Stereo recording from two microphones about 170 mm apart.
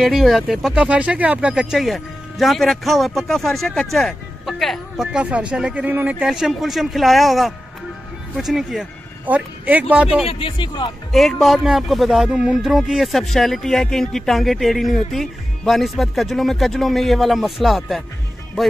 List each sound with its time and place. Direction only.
0.0 s speech: centre (ahead or behind)
10.2 s speech: 30° left (ahead or behind)
11.1 s speech: centre (ahead or behind)